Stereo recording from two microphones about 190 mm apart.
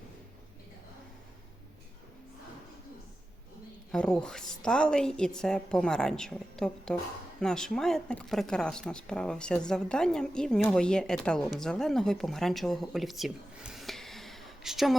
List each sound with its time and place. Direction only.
3.9 s a woman's voice: 5° left (ahead or behind)